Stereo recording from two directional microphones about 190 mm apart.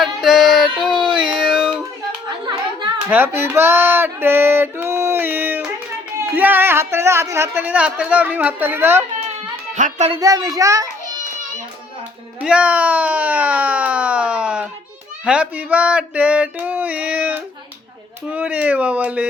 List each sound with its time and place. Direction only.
0.0 s a sound: centre (ahead or behind)
3.1 s music: 10° right (ahead or behind)
6.1 s speech: 10° right (ahead or behind)
9.7 s speech: 40° right (ahead or behind)
10.1 s speech: 20° right (ahead or behind)
12.4 s a sound: 5° right (ahead or behind)
15.2 s speech: 5° right (ahead or behind)